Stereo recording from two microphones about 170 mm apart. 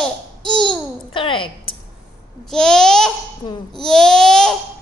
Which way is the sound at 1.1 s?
30° left (ahead or behind).